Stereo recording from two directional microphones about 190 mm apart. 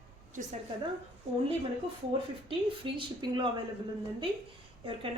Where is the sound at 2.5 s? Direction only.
25° right (ahead or behind).